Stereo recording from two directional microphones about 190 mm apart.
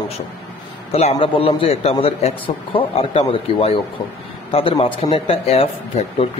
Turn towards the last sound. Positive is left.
turn(degrees=30)  # may be behind; listen again after turning